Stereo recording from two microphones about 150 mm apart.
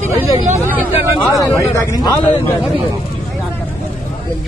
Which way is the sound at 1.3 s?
20° left (ahead or behind).